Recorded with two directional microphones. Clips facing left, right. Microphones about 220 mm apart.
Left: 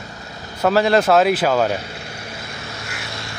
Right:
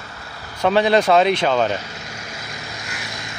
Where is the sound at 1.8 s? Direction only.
30° left (ahead or behind).